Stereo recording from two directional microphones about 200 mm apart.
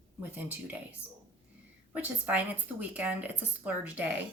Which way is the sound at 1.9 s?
10° right (ahead or behind).